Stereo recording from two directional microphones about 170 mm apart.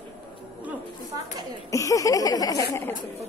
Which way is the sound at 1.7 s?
20° left (ahead or behind).